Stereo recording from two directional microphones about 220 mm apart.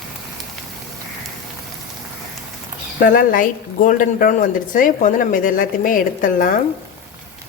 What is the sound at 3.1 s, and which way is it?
Speech, 40° left (ahead or behind).